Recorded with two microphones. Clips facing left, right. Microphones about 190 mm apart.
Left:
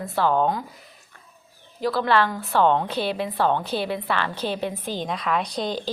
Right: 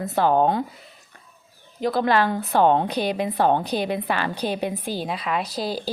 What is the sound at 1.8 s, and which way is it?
A woman's voice, 20° right (ahead or behind).